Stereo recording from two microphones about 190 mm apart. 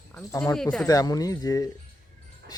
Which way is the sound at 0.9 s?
20° left (ahead or behind).